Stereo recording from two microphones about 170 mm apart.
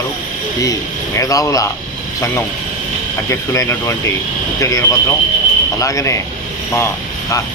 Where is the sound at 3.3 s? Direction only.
20° left (ahead or behind).